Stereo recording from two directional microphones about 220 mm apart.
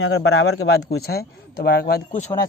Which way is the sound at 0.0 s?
55° left (ahead or behind).